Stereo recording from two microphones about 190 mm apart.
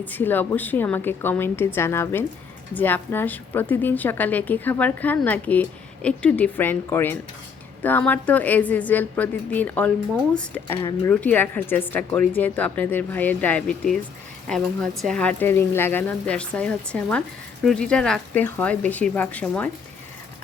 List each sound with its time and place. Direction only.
0.0 s speech: 10° left (ahead or behind)
10.8 s speech: 20° left (ahead or behind)
11.1 s speech: 10° left (ahead or behind)